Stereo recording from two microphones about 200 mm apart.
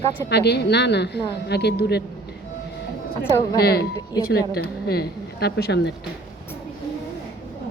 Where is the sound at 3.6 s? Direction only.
50° left (ahead or behind).